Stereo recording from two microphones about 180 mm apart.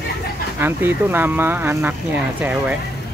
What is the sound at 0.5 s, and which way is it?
Speech, 10° right (ahead or behind).